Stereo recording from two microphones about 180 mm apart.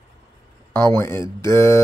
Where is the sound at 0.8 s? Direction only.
15° left (ahead or behind).